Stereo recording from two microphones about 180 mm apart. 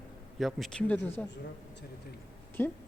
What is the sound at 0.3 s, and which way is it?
Speech, centre (ahead or behind).